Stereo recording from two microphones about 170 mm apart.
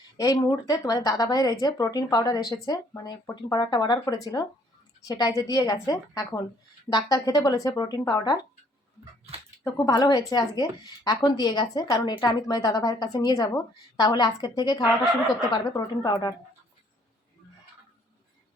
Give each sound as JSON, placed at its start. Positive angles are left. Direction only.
{"t": 0.2, "sound": "a woman's voice", "side_deg": 20}
{"t": 9.6, "sound": "a woman's voice", "side_deg": 20}